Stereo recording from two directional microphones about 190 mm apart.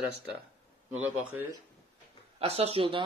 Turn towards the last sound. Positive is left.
turn(degrees=-30)  # may be behind; listen again after turning